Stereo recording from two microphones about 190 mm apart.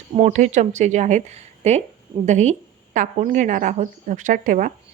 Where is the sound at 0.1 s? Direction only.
35° right (ahead or behind).